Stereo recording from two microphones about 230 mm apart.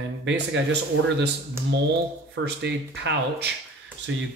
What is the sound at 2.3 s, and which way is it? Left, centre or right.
Speech, right.